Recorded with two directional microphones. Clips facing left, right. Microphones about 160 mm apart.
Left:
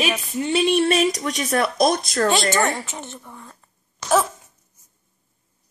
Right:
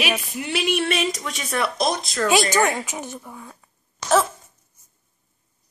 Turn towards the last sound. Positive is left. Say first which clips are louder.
# even
turn(degrees=0)  # may be behind; listen again after turning